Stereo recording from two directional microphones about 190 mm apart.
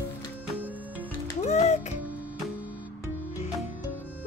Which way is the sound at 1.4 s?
35° left (ahead or behind).